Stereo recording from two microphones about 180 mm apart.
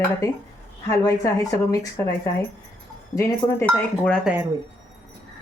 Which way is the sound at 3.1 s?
15° left (ahead or behind).